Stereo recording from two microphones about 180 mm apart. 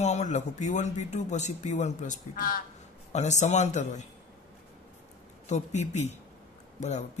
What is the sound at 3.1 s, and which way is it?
Speech, 40° left (ahead or behind).